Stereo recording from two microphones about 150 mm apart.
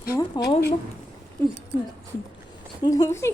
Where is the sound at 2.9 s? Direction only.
20° left (ahead or behind).